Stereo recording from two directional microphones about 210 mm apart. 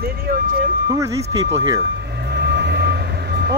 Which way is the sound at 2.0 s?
50° right (ahead or behind).